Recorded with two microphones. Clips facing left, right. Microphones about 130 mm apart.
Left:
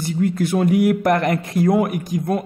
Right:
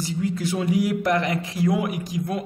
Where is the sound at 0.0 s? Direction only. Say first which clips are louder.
Left 5 dB; 55° left (ahead or behind).